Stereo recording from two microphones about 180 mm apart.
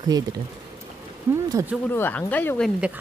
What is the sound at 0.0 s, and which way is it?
Speech, 20° right (ahead or behind).